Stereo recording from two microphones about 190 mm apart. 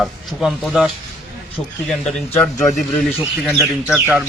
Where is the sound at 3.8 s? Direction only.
10° right (ahead or behind).